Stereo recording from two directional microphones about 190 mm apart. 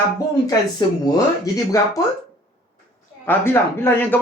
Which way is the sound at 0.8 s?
20° left (ahead or behind).